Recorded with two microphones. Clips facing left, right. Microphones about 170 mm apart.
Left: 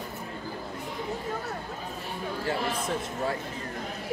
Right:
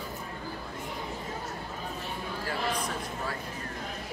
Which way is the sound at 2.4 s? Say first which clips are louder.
Left 2 dB; 25° left (ahead or behind).